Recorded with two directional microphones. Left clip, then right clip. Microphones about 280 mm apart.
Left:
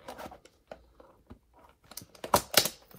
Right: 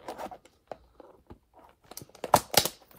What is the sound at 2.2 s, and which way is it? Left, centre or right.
Typing, right.